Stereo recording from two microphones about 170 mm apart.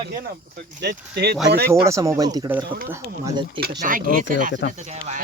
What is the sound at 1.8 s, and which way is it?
Speech, 15° right (ahead or behind).